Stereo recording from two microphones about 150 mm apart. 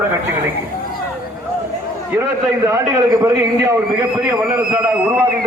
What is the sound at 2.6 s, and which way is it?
A man's voice, 20° right (ahead or behind).